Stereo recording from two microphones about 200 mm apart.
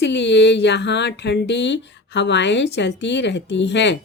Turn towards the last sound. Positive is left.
turn(degrees=60)  # may be behind; listen again after turning